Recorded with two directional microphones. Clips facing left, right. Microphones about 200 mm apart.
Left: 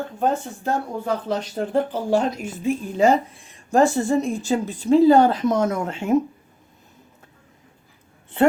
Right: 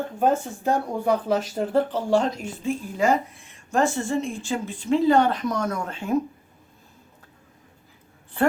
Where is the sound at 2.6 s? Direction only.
20° left (ahead or behind).